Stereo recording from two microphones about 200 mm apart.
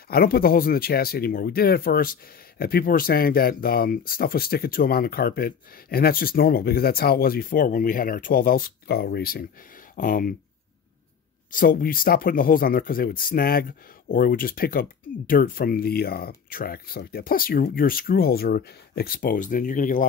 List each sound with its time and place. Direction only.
0.1 s speech: 50° left (ahead or behind)
11.5 s speech: 45° left (ahead or behind)